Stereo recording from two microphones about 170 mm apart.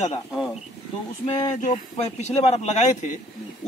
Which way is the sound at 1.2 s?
25° left (ahead or behind).